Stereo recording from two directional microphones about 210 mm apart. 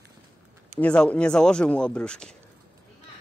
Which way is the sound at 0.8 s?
5° left (ahead or behind).